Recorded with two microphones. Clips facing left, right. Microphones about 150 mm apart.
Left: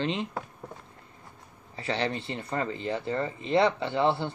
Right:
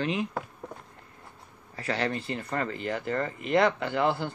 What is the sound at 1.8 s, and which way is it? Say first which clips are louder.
Speech: even; 25° left (ahead or behind).